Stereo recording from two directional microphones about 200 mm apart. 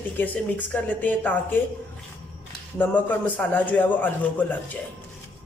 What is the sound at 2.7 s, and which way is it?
A man's voice, 10° left (ahead or behind).